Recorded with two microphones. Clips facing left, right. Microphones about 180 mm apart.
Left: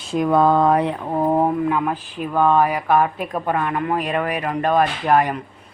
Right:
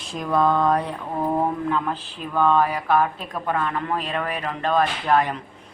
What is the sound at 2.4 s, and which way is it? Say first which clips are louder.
Speech: left 2 dB; 15° left (ahead or behind).